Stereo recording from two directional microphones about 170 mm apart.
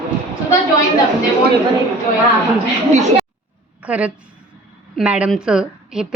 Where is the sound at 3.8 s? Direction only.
10° right (ahead or behind).